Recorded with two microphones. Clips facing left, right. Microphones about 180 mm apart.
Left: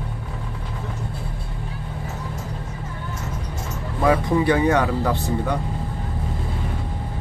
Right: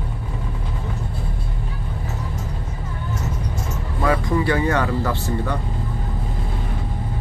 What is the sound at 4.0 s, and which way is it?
Speech, 15° left (ahead or behind).